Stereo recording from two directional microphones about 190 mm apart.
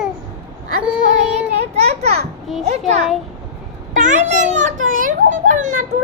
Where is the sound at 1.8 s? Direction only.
35° right (ahead or behind).